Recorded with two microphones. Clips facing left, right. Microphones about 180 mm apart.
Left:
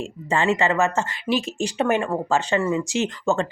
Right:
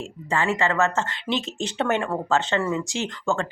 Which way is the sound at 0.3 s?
20° left (ahead or behind).